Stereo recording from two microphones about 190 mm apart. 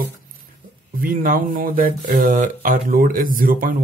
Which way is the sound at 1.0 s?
50° right (ahead or behind).